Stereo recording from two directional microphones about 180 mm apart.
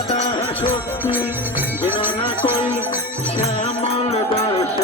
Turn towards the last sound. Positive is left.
turn(degrees=30)  # may be behind; listen again after turning